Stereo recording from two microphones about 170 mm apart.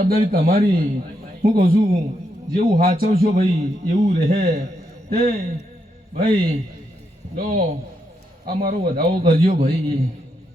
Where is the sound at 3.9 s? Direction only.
40° right (ahead or behind).